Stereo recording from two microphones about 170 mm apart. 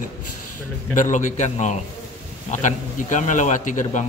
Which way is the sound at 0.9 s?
45° left (ahead or behind).